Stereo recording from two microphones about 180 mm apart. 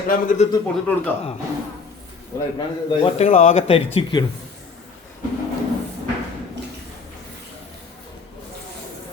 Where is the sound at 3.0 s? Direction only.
40° left (ahead or behind).